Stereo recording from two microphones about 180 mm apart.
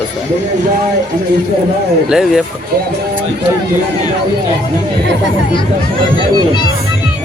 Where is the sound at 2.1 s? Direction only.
5° right (ahead or behind).